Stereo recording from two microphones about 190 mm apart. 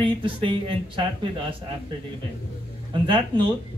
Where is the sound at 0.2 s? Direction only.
25° right (ahead or behind).